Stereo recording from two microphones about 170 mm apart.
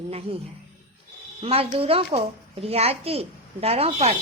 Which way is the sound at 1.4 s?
35° right (ahead or behind).